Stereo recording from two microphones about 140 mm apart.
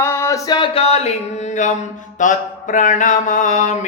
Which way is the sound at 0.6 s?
45° left (ahead or behind).